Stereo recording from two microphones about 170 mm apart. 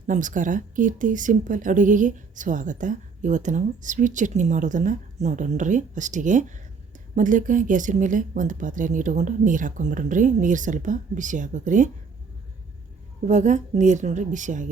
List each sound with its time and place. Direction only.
0.1 s speech: 50° right (ahead or behind)
13.2 s speech: 45° right (ahead or behind)